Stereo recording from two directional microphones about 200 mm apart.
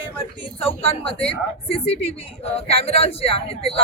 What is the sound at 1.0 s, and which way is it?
A woman's voice, 25° left (ahead or behind).